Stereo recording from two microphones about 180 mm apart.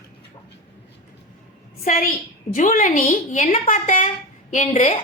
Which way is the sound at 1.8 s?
50° left (ahead or behind).